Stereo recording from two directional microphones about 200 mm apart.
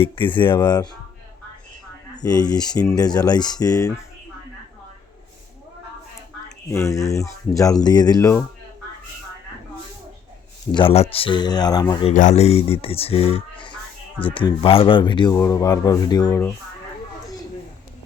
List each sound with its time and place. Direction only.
0.0 s speech: 25° left (ahead or behind)
2.1 s speech: 20° left (ahead or behind)
6.7 s speech: 15° left (ahead or behind)
10.8 s speech: 30° left (ahead or behind)
12.1 s speech: 35° left (ahead or behind); by 16.6 s 15° left (ahead or behind)